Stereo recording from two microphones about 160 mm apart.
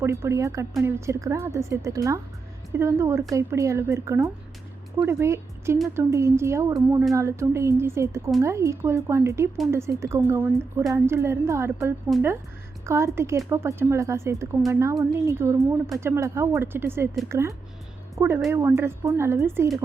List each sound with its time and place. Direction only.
0.0 s a woman's voice: 15° right (ahead or behind)